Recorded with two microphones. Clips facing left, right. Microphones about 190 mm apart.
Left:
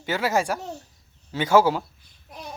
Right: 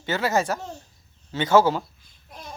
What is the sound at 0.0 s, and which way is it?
Speech, 10° left (ahead or behind).